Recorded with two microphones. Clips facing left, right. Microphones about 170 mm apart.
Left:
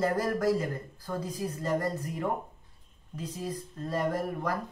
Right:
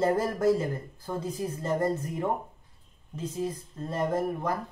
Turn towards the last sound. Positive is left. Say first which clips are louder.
# right 2 dB
turn(degrees=-25)  # may be behind; listen again after turning